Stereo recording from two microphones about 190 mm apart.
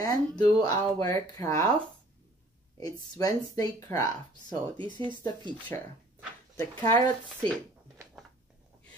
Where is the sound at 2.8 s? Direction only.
20° left (ahead or behind).